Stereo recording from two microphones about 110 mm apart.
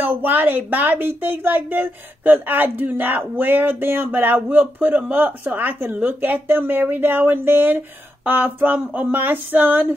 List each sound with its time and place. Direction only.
0.0 s a woman's voice: 15° right (ahead or behind)